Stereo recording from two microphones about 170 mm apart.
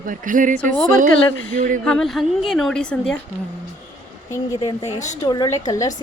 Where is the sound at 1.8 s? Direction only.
5° left (ahead or behind).